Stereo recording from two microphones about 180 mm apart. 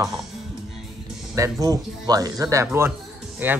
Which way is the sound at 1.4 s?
20° right (ahead or behind).